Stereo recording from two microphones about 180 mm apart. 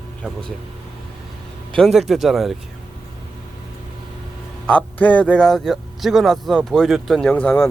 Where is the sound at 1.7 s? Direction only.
Centre (ahead or behind).